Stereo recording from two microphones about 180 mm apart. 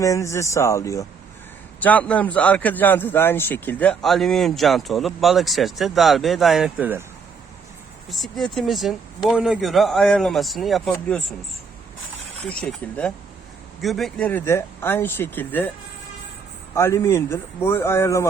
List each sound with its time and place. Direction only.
0.0 s a man's voice: 15° left (ahead or behind); by 7.0 s 10° right (ahead or behind)
8.1 s a man's voice: centre (ahead or behind)
12.5 s a man's voice: 5° left (ahead or behind)
16.7 s speech: 15° left (ahead or behind)